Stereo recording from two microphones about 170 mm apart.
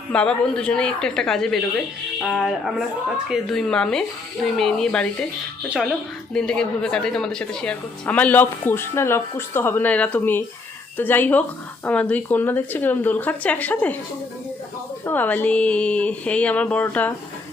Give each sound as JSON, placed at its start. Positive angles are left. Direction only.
{"t": 0.1, "sound": "a woman's voice", "side_deg": 5}
{"t": 15.0, "sound": "a woman's voice", "side_deg": 10}